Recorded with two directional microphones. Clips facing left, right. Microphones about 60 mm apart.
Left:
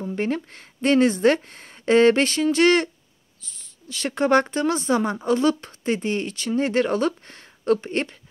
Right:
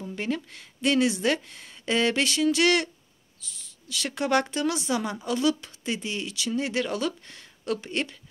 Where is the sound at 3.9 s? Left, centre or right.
Left.